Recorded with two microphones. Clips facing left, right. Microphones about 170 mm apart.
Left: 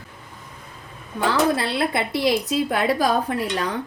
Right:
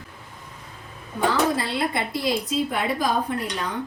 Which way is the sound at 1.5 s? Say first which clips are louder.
Left 2 dB; 70° left (ahead or behind).